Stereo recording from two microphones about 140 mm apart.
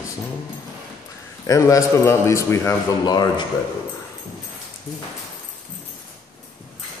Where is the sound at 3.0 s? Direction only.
30° left (ahead or behind).